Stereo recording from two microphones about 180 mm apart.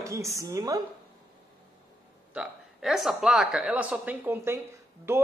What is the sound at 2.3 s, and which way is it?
A man's voice, 5° right (ahead or behind).